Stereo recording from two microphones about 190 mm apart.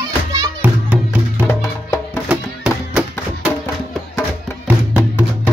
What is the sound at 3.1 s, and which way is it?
Music, 10° left (ahead or behind).